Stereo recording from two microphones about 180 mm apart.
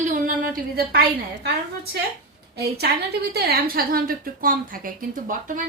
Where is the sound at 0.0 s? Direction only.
50° right (ahead or behind).